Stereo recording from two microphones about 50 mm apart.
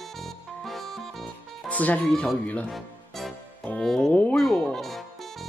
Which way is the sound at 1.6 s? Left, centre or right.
Left.